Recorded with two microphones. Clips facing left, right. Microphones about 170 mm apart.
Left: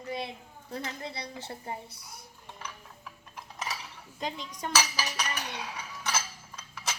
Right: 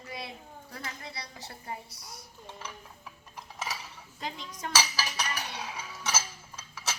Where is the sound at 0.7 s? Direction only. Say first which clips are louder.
Left 6 dB; 25° left (ahead or behind).